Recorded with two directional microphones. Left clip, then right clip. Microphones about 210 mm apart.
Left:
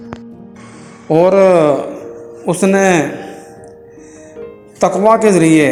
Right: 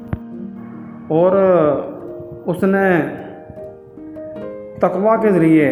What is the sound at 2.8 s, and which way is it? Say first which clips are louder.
Speech: left 3 dB; 15° left (ahead or behind).